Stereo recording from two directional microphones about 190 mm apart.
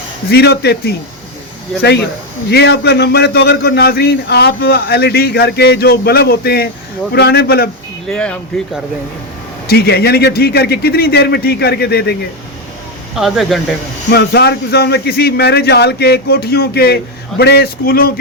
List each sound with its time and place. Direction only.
0.3 s a man's voice: 60° left (ahead or behind)
2.5 s a man's voice: 60° left (ahead or behind)
8.1 s speech: 5° left (ahead or behind)
9.6 s a man's voice: 55° left (ahead or behind)
13.1 s speech: centre (ahead or behind)
14.1 s a man's voice: 60° left (ahead or behind)